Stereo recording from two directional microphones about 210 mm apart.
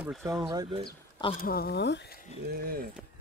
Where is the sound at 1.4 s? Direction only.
45° left (ahead or behind).